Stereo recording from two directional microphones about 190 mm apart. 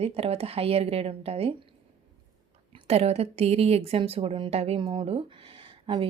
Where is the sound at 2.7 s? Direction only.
30° right (ahead or behind).